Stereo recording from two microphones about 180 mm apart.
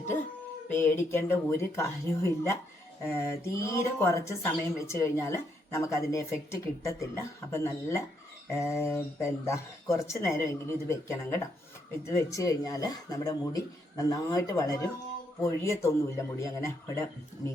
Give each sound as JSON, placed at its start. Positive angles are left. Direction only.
{"t": 0.7, "sound": "a woman's voice", "side_deg": 15}